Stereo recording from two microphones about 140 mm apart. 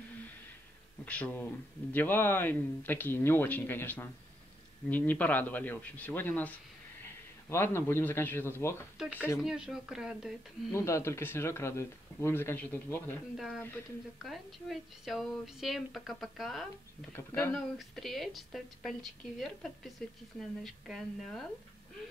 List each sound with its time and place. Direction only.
1.0 s a man's voice: 10° left (ahead or behind)
9.4 s a woman's voice: 5° right (ahead or behind)
10.7 s speech: 20° left (ahead or behind)
14.2 s a woman's voice: centre (ahead or behind)
17.1 s speech: 15° left (ahead or behind)
17.6 s a woman's voice: centre (ahead or behind)